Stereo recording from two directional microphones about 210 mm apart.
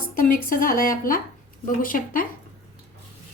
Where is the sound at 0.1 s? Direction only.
40° left (ahead or behind).